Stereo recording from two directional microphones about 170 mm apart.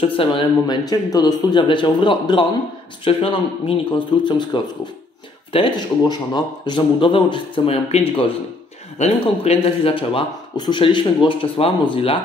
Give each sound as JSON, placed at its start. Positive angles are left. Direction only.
{"t": 0.0, "sound": "speech", "side_deg": 30}
{"t": 5.5, "sound": "speech", "side_deg": 25}